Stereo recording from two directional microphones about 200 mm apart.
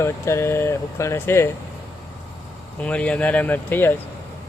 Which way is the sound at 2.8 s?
5° left (ahead or behind).